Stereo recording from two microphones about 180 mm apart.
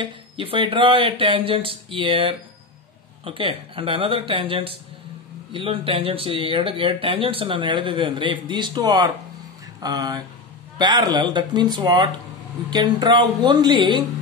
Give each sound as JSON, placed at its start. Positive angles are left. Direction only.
{"t": 0.0, "sound": "speech", "side_deg": -30}